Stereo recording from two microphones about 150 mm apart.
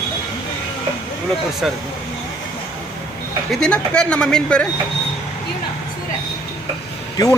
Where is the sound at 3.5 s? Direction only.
5° left (ahead or behind).